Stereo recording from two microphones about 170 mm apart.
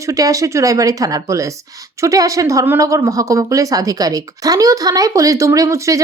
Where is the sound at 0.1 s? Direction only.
20° right (ahead or behind).